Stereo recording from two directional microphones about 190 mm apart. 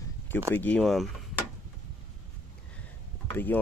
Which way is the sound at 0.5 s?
10° left (ahead or behind).